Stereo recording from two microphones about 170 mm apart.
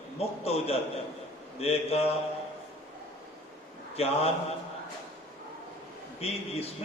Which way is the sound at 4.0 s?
35° left (ahead or behind).